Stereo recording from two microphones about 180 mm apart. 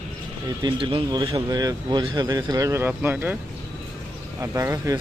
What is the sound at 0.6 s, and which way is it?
Speech, 25° right (ahead or behind).